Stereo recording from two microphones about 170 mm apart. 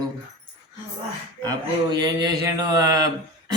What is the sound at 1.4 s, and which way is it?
Speech, 25° right (ahead or behind).